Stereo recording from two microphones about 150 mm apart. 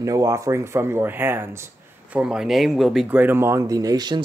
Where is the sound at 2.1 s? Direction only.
5° right (ahead or behind).